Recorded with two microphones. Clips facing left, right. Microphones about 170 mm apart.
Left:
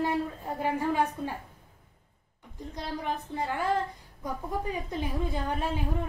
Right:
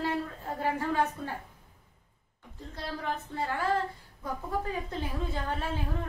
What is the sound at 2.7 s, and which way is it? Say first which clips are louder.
Speech: left 1 dB; 15° left (ahead or behind).